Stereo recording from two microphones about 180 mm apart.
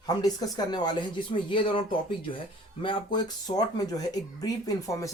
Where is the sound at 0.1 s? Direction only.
20° left (ahead or behind).